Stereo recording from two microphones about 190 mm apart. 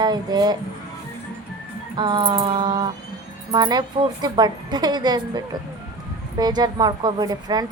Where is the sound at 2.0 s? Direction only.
25° right (ahead or behind).